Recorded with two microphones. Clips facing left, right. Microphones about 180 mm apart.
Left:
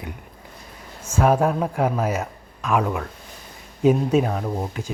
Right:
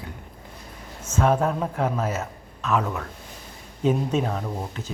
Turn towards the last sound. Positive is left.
turn(degrees=10)  # may be behind; listen again after turning